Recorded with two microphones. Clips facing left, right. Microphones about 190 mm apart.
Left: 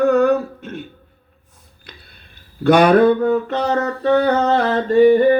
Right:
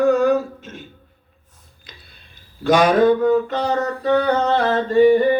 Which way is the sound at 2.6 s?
60° left (ahead or behind).